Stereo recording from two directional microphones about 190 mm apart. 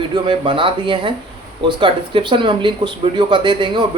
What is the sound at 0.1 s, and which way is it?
Speech, 25° right (ahead or behind).